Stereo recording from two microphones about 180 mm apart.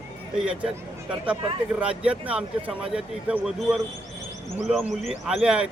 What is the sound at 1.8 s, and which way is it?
A man's voice, 5° right (ahead or behind).